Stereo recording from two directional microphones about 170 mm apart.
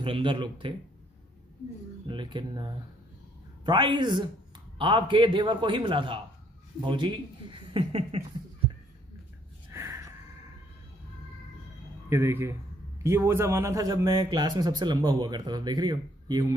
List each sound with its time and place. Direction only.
0.0 s a man's voice: 30° right (ahead or behind)
2.0 s a man's voice: 30° right (ahead or behind)
9.7 s a sound: 15° right (ahead or behind)
12.1 s a man's voice: 15° right (ahead or behind)